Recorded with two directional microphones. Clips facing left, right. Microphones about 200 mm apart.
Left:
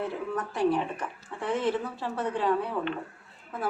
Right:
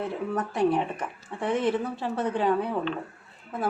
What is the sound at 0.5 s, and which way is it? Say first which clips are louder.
A woman's voice: right 1 dB; 20° right (ahead or behind).